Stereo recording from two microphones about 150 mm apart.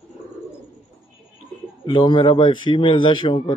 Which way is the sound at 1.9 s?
30° left (ahead or behind).